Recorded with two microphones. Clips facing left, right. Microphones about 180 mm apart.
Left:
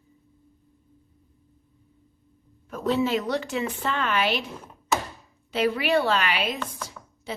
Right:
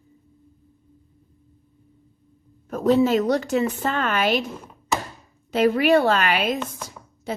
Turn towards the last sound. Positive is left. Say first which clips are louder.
# right 5 dB
turn(degrees=-45)  # may be behind; listen again after turning